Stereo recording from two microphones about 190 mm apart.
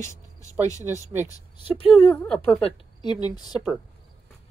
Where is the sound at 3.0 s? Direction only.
20° left (ahead or behind).